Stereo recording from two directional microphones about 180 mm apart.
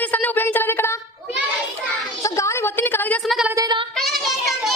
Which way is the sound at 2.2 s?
15° left (ahead or behind).